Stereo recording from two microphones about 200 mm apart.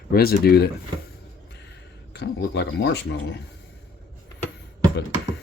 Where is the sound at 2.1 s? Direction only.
60° left (ahead or behind).